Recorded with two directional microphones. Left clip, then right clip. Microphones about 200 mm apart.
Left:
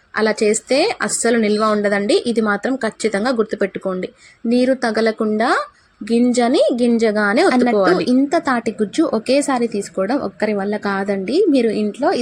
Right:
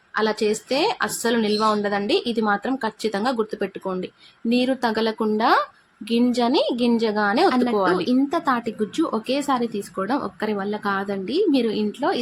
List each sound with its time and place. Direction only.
0.1 s a woman's voice: 15° left (ahead or behind)